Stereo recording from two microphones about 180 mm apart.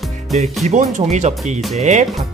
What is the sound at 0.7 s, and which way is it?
Speech, 40° right (ahead or behind).